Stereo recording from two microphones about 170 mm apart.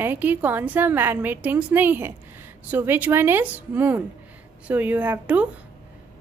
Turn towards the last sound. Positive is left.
turn(degrees=-10)  # may be behind; listen again after turning